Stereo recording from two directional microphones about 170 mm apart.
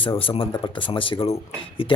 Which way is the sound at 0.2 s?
30° left (ahead or behind).